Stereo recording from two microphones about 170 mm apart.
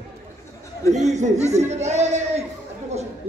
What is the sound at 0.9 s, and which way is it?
A man's voice, 45° right (ahead or behind).